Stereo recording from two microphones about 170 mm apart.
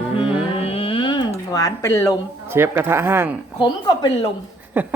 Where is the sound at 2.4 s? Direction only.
15° right (ahead or behind).